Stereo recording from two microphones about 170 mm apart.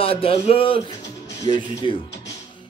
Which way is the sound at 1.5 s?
30° right (ahead or behind).